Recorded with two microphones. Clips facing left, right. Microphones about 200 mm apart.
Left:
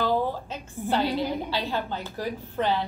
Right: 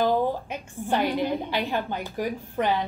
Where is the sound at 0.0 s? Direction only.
15° right (ahead or behind).